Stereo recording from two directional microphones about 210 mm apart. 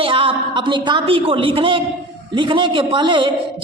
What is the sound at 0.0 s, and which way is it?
A woman's voice, 25° right (ahead or behind).